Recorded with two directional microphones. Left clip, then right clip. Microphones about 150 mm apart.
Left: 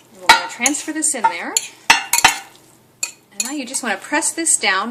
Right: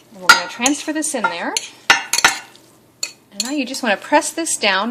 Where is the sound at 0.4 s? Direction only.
35° right (ahead or behind).